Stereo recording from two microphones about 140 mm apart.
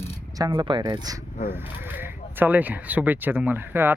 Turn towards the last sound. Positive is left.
turn(degrees=-15)  # may be behind; listen again after turning